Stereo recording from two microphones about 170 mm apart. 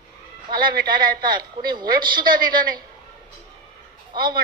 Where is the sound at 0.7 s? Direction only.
25° right (ahead or behind).